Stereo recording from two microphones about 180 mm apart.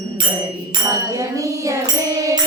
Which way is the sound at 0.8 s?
20° right (ahead or behind).